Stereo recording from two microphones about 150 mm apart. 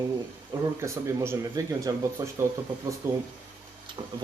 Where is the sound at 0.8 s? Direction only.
20° right (ahead or behind).